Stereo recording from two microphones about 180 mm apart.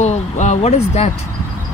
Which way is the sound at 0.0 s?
40° left (ahead or behind).